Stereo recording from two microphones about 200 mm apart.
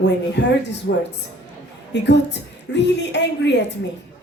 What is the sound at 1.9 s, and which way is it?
Speech, 60° left (ahead or behind).